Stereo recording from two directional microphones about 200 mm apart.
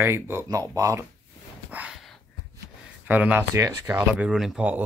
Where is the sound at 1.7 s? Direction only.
5° right (ahead or behind).